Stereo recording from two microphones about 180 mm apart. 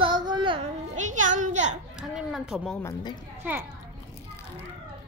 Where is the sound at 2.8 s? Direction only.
15° left (ahead or behind).